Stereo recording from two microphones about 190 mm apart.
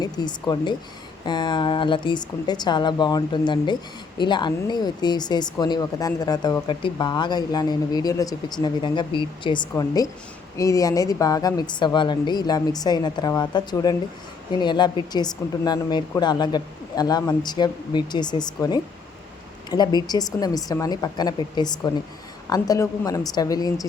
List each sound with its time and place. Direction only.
0.0 s a woman's voice: 20° left (ahead or behind)